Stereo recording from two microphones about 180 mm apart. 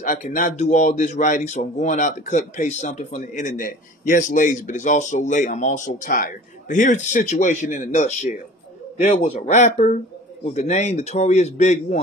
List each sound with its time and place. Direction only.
0.0 s a man's voice: 50° left (ahead or behind)